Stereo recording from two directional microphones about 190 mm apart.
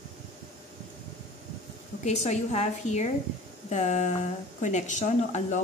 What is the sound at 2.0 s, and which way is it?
Speech, 35° left (ahead or behind).